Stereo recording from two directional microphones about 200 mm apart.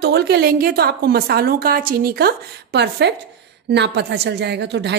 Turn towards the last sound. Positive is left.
turn(degrees=-60)  # may be behind; listen again after turning